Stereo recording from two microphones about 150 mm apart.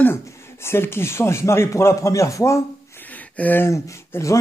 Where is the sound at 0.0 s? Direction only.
15° left (ahead or behind).